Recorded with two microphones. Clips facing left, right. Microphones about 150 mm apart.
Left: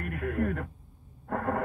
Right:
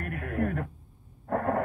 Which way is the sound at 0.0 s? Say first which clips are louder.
Even; 45° right (ahead or behind).